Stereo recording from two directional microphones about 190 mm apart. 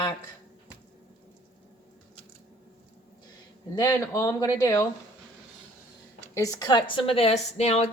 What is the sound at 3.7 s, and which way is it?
Speech, 20° left (ahead or behind).